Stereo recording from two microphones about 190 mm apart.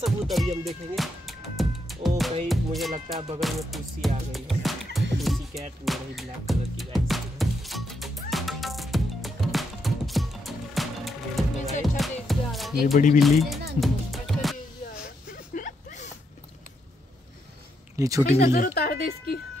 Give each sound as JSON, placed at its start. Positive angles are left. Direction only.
{"t": 0.0, "sound": "music", "side_deg": 0}
{"t": 12.9, "sound": "a woman's voice", "side_deg": 45}
{"t": 13.2, "sound": "music", "side_deg": 0}
{"t": 15.3, "sound": "a sound", "side_deg": 45}
{"t": 17.9, "sound": "speech", "side_deg": -15}
{"t": 18.4, "sound": "a woman's voice", "side_deg": 50}